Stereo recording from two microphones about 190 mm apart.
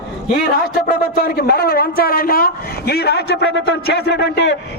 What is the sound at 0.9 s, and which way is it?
A man's voice, 55° left (ahead or behind).